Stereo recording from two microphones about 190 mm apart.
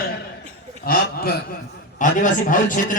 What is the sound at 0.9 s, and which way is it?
A man's voice, 50° left (ahead or behind).